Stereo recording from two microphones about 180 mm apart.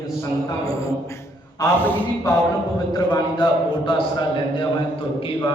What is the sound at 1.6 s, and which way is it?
Speech, 10° left (ahead or behind).